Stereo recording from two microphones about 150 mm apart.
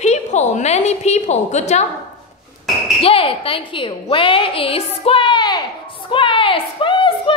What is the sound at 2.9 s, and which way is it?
A woman's voice, 40° left (ahead or behind).